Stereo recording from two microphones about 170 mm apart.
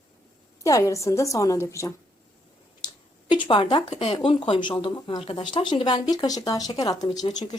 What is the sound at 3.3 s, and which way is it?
A woman's voice, 30° left (ahead or behind).